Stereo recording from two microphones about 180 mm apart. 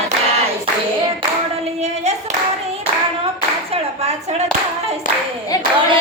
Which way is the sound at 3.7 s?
35° right (ahead or behind).